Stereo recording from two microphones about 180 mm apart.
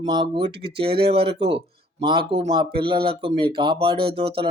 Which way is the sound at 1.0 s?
65° right (ahead or behind).